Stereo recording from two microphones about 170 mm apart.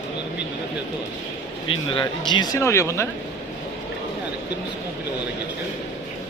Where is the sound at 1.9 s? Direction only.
25° left (ahead or behind).